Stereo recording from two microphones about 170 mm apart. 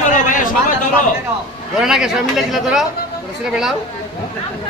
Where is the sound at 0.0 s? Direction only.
50° left (ahead or behind).